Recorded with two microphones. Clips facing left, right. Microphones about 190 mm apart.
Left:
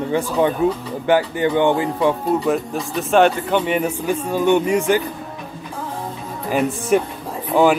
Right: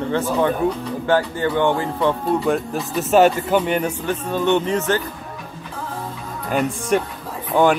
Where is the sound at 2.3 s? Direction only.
Centre (ahead or behind).